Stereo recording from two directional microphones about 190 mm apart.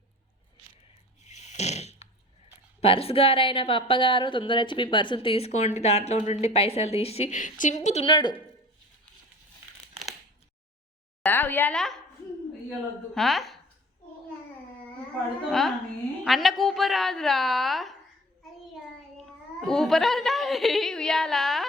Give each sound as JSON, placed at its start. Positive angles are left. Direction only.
{"t": 1.3, "sound": "a sound", "side_deg": 35}
{"t": 2.8, "sound": "a woman's voice", "side_deg": 30}
{"t": 8.0, "sound": "a woman's voice", "side_deg": 20}
{"t": 11.2, "sound": "speech", "side_deg": 10}
{"t": 13.1, "sound": "a woman's voice", "side_deg": 0}
{"t": 15.4, "sound": "a woman's voice", "side_deg": 0}
{"t": 19.1, "sound": "a child's voice", "side_deg": 0}